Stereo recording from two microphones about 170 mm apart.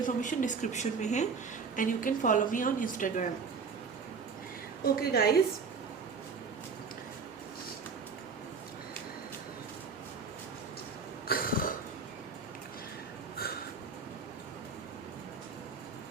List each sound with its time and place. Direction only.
0.0 s a woman's voice: 50° left (ahead or behind)
4.9 s a woman's voice: 65° left (ahead or behind)
11.3 s cough: 60° left (ahead or behind)